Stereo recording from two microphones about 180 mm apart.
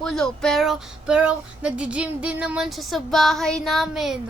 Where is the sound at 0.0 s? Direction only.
5° left (ahead or behind).